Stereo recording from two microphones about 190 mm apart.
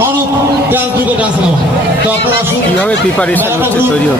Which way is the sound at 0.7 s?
10° right (ahead or behind).